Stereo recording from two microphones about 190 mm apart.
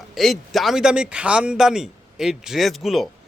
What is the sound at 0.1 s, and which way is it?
Speech, centre (ahead or behind).